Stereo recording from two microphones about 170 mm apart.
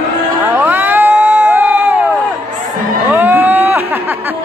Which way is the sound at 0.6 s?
10° right (ahead or behind).